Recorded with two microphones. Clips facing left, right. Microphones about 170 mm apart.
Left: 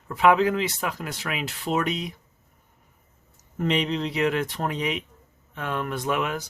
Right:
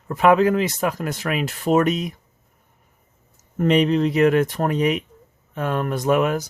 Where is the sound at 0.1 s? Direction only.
45° right (ahead or behind).